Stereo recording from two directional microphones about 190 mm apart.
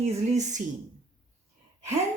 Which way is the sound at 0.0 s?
40° right (ahead or behind).